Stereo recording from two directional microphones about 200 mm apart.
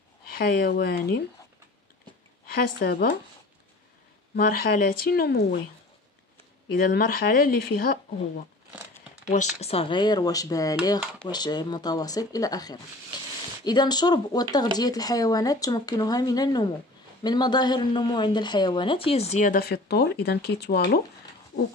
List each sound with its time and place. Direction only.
0.3 s speech: 50° left (ahead or behind)
2.5 s speech: 50° left (ahead or behind)
4.4 s speech: 45° left (ahead or behind)
6.9 s speech: 50° left (ahead or behind)
9.3 s speech: 35° left (ahead or behind); by 21.0 s 55° left (ahead or behind)